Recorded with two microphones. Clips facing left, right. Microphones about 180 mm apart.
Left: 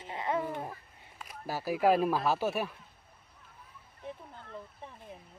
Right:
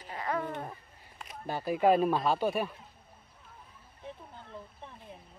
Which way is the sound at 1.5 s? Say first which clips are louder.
Right 1 dB; 5° left (ahead or behind).